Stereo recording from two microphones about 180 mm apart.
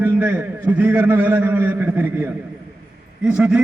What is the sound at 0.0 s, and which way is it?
A man's voice, 15° right (ahead or behind).